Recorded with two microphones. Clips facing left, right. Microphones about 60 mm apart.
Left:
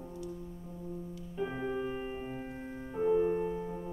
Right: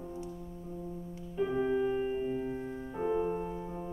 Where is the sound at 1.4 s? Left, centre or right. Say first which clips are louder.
Right 5 dB; centre.